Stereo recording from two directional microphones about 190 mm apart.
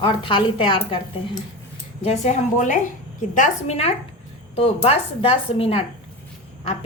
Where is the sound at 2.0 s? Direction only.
35° left (ahead or behind).